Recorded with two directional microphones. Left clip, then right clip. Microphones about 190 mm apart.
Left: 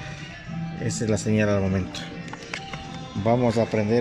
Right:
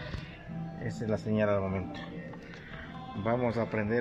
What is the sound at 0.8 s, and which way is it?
Speech, 20° left (ahead or behind).